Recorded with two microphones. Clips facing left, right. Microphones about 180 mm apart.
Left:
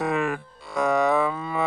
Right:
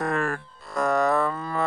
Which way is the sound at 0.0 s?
5° left (ahead or behind).